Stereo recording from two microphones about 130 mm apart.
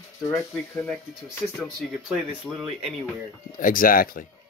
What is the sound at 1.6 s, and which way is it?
Speech, 5° right (ahead or behind).